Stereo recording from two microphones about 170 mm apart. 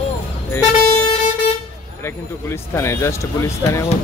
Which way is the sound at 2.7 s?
15° left (ahead or behind).